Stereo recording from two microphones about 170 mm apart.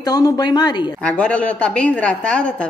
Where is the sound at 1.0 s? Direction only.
5° left (ahead or behind).